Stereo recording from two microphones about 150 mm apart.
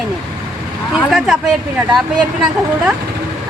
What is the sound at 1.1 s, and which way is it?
A woman's voice, 5° right (ahead or behind).